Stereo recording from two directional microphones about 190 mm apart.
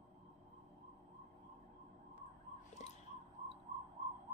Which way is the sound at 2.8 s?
40° left (ahead or behind).